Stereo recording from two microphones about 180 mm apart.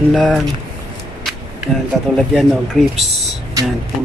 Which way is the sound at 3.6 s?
20° right (ahead or behind).